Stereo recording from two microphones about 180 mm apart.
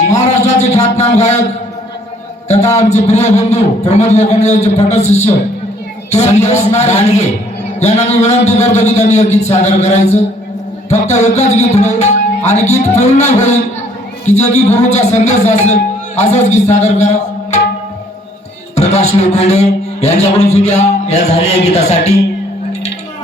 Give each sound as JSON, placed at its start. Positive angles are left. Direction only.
{"t": 0.1, "sound": "a sound", "side_deg": 40}
{"t": 2.5, "sound": "a man's voice", "side_deg": 40}
{"t": 18.7, "sound": "a man's voice", "side_deg": 40}